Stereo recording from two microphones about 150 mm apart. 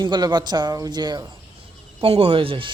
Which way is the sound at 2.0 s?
40° right (ahead or behind).